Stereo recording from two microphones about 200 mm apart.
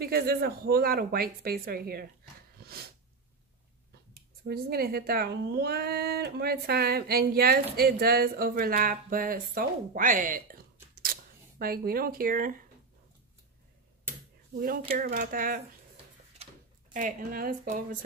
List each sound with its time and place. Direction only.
0.0 s speech: 50° right (ahead or behind)
2.6 s a sound: 50° right (ahead or behind)
4.1 s speech: 50° right (ahead or behind)
14.6 s speech: 45° right (ahead or behind)
16.9 s speech: 45° right (ahead or behind)